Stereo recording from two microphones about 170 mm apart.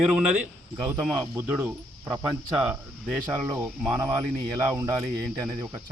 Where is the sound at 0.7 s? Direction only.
20° right (ahead or behind).